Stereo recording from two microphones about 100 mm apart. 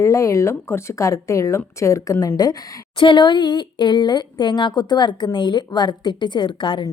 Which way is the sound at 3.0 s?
55° left (ahead or behind).